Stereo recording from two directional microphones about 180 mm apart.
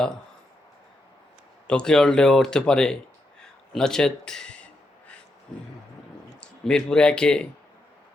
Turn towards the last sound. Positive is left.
turn(degrees=5)  # may be behind; listen again after turning